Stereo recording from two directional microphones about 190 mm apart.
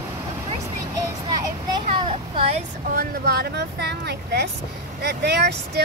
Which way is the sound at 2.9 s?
55° right (ahead or behind).